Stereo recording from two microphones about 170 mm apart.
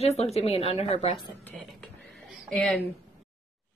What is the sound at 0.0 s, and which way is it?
A woman's voice, 40° left (ahead or behind).